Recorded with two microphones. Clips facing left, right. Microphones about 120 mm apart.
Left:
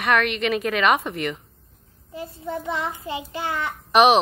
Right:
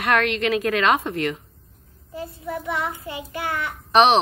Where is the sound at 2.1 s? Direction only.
25° left (ahead or behind).